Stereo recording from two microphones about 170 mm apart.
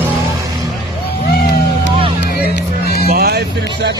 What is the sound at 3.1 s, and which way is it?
Music, 60° right (ahead or behind).